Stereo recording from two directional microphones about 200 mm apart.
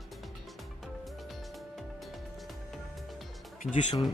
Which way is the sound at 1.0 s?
Centre (ahead or behind).